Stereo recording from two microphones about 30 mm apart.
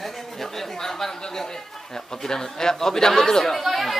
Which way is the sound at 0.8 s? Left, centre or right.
Centre.